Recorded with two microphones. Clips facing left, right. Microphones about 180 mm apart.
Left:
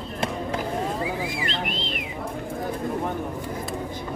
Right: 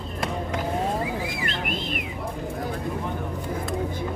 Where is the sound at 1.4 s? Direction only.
50° right (ahead or behind).